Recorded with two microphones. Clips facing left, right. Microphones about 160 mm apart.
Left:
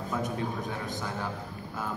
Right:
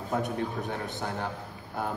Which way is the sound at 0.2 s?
65° right (ahead or behind).